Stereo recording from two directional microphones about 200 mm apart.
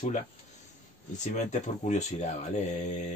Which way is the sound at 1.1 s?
35° left (ahead or behind).